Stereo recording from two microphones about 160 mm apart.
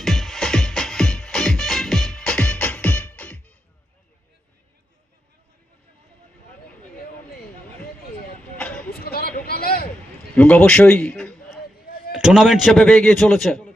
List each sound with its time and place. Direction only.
0.0 s music: centre (ahead or behind)
8.5 s vehicle: 5° left (ahead or behind)
8.9 s a sound: 70° left (ahead or behind)
10.3 s a man's voice: 5° left (ahead or behind)